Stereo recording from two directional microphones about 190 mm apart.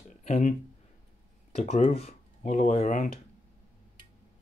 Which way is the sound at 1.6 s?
35° left (ahead or behind).